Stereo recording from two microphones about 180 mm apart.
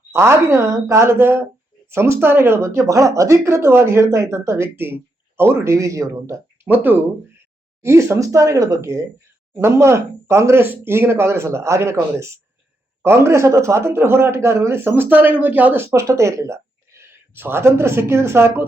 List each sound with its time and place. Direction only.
0.1 s a man's voice: 15° right (ahead or behind)